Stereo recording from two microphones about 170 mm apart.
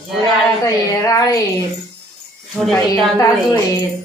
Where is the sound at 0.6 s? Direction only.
20° left (ahead or behind).